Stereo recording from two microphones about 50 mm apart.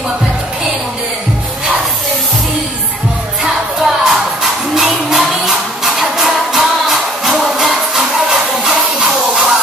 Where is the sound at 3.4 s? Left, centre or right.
Centre.